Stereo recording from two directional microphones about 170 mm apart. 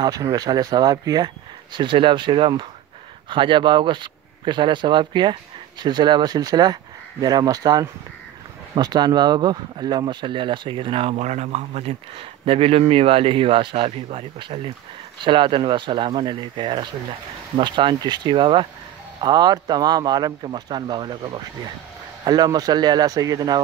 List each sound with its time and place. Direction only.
0.0 s speech: 20° right (ahead or behind)